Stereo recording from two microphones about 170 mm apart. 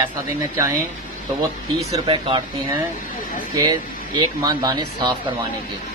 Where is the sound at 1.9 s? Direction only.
30° right (ahead or behind).